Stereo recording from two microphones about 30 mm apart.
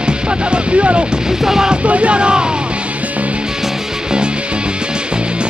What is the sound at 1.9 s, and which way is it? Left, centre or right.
Speech, right.